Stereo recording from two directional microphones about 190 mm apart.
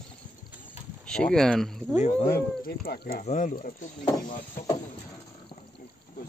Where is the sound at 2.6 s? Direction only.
50° left (ahead or behind).